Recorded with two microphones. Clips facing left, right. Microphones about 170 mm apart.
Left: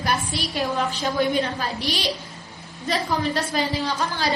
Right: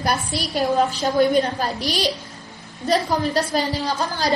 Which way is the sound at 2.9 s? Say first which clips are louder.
Right 4 dB; 40° right (ahead or behind).